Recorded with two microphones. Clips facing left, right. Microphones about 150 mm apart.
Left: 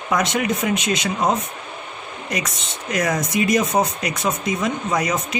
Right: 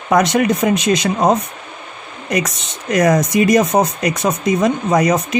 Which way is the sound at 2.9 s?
45° right (ahead or behind).